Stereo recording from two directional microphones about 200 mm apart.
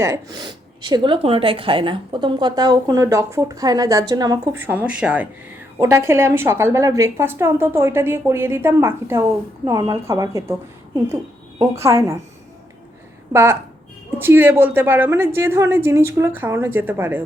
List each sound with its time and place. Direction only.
0.0 s a woman's voice: 15° right (ahead or behind)
11.6 s a woman's voice: 15° right (ahead or behind)
13.3 s a woman's voice: 10° right (ahead or behind)